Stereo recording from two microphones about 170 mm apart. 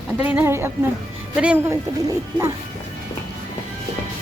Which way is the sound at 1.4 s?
5° right (ahead or behind).